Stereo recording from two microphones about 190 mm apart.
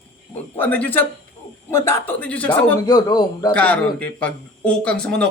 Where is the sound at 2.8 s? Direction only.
20° left (ahead or behind).